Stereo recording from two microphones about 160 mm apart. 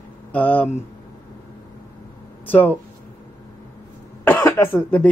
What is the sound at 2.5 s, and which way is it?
Speech, 10° left (ahead or behind).